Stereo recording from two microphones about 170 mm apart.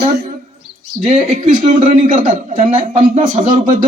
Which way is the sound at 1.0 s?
45° right (ahead or behind).